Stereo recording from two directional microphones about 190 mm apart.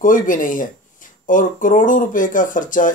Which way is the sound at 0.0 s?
45° left (ahead or behind).